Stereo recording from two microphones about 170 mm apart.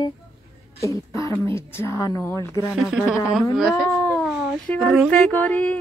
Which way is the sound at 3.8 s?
15° left (ahead or behind).